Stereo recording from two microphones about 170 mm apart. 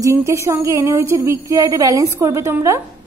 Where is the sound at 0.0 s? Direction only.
15° right (ahead or behind).